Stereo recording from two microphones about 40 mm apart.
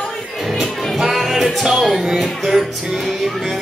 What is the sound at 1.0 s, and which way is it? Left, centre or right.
Music, centre.